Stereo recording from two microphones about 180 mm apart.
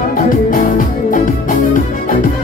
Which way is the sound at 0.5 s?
50° left (ahead or behind).